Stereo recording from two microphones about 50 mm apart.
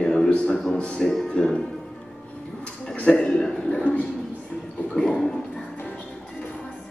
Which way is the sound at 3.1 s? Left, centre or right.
Centre.